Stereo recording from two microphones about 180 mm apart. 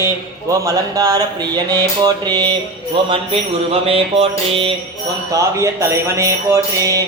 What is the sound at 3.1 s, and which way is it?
Music, 30° right (ahead or behind).